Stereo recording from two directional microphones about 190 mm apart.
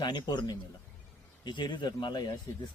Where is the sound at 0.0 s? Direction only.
20° left (ahead or behind).